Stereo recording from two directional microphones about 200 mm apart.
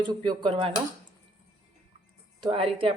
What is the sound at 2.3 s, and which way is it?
Speech, 25° right (ahead or behind).